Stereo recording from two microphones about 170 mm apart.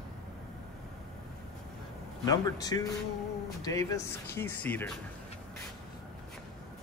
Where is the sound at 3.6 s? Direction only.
20° left (ahead or behind).